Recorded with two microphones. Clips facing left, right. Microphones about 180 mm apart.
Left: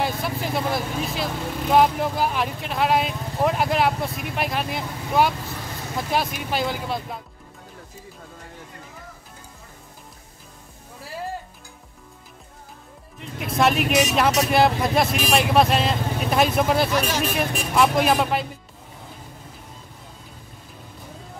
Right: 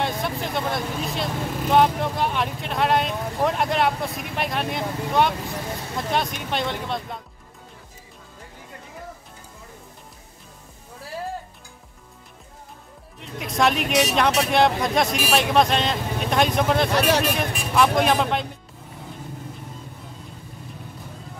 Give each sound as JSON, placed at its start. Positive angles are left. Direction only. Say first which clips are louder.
{"t": 0.0, "sound": "speech", "louder": "even", "side_deg": 0}
{"t": 13.2, "sound": "speech", "louder": "left 1 dB", "side_deg": 0}
{"t": 16.9, "sound": "speech", "louder": "right 3 dB", "side_deg": -65}
{"t": 17.4, "sound": "speech", "louder": "left 1 dB", "side_deg": 0}